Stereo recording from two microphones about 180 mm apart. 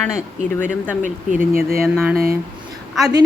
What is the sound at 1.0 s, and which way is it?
Speech, 45° right (ahead or behind).